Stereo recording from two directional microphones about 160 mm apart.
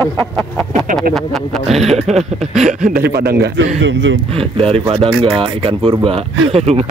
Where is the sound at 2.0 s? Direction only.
40° right (ahead or behind).